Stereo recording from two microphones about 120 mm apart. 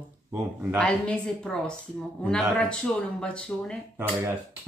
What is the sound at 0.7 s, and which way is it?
A woman's voice, 10° left (ahead or behind).